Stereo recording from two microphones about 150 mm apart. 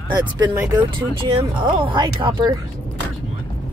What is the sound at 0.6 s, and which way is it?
Speech, 25° right (ahead or behind).